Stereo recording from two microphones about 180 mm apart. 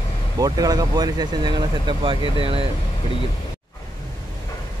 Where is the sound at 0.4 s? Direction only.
20° right (ahead or behind).